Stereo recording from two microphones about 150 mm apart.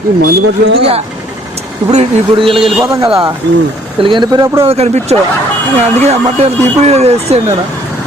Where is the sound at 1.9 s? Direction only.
50° right (ahead or behind).